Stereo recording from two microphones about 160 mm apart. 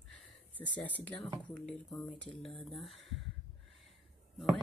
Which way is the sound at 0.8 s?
10° left (ahead or behind).